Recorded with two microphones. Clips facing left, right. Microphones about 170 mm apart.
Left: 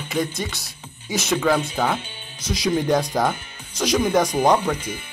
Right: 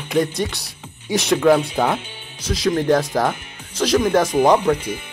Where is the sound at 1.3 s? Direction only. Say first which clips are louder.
Right 5 dB; centre (ahead or behind).